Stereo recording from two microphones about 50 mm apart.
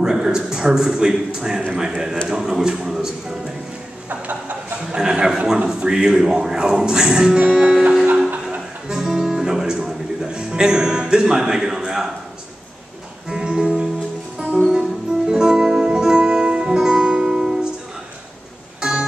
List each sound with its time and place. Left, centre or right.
0.0 s a man's voice: centre
2.2 s a sound: centre
4.1 s speech: right
4.9 s speech: centre
8.8 s music: centre
13.3 s music: centre
18.8 s music: centre